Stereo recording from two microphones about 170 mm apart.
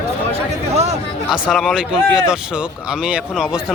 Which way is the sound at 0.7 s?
40° right (ahead or behind).